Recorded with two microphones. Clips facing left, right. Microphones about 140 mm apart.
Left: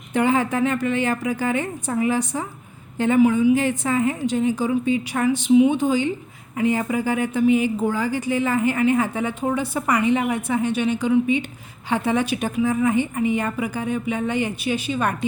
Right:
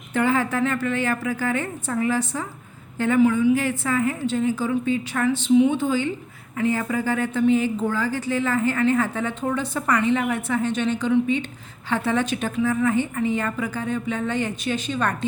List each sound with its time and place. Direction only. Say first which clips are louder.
0.1 s speech: left 2 dB; 20° left (ahead or behind)